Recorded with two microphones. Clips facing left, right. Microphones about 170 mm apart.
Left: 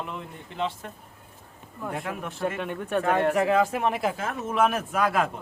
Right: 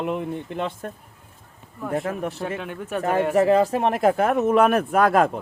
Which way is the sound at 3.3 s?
35° right (ahead or behind).